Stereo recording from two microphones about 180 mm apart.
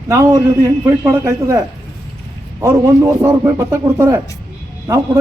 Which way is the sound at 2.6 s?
15° right (ahead or behind).